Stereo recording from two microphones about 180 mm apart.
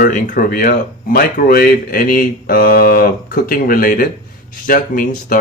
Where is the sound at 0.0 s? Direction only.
50° left (ahead or behind).